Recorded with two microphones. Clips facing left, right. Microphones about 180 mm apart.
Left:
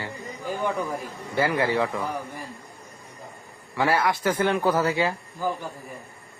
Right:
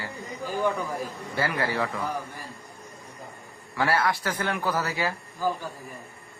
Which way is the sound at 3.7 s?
20° left (ahead or behind).